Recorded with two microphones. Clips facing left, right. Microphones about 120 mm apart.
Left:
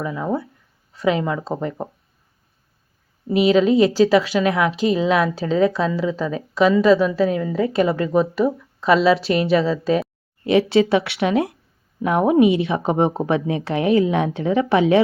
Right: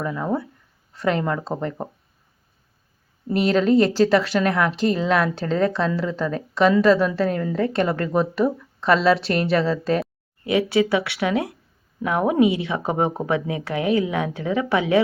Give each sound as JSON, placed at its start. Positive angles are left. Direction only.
{"t": 0.0, "sound": "a woman's voice", "side_deg": 5}
{"t": 3.2, "sound": "a woman's voice", "side_deg": 5}
{"t": 10.4, "sound": "a woman's voice", "side_deg": 25}